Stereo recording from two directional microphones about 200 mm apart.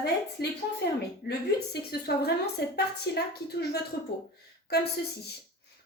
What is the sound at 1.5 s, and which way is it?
A woman's voice, 55° left (ahead or behind).